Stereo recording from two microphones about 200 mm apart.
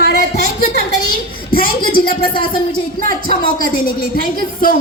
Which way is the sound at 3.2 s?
45° left (ahead or behind).